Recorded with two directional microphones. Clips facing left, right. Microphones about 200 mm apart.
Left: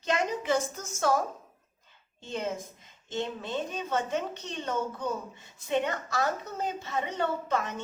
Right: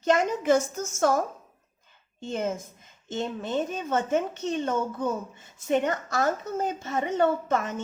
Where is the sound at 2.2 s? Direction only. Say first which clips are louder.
Right 4 dB; 45° right (ahead or behind).